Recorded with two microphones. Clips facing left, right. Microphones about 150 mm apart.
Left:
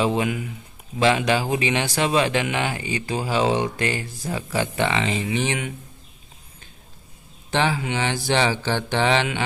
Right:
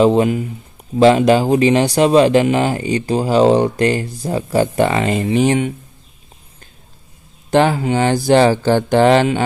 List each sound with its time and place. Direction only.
0.0 s speech: 40° right (ahead or behind)
7.5 s mantra: 45° right (ahead or behind)